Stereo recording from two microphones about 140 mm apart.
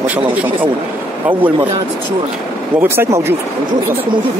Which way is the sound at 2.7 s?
15° right (ahead or behind).